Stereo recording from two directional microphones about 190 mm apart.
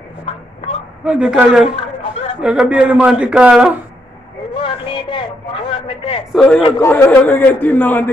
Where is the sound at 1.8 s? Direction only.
30° left (ahead or behind).